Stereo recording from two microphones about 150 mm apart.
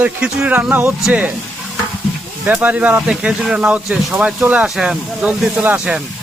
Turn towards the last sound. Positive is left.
turn(degrees=-10)  # may be behind; listen again after turning